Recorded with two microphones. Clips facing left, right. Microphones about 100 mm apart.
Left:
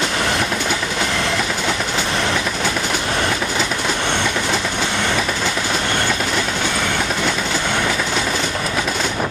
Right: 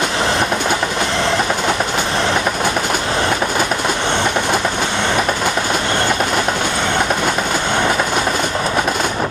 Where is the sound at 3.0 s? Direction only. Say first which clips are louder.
Right 3 dB; 30° right (ahead or behind).